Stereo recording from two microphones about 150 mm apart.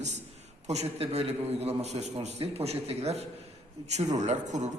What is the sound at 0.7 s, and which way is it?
Speech, 45° right (ahead or behind).